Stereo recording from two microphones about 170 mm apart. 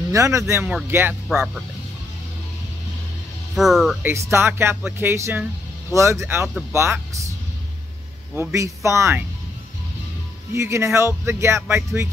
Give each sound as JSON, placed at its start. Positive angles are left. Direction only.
{"t": 0.1, "sound": "speech", "side_deg": -20}
{"t": 3.5, "sound": "speech", "side_deg": 0}
{"t": 4.0, "sound": "speech", "side_deg": -15}
{"t": 8.4, "sound": "speech", "side_deg": -15}
{"t": 10.5, "sound": "speech", "side_deg": -15}